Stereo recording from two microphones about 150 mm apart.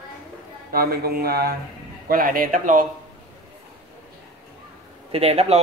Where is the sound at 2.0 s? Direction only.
75° right (ahead or behind).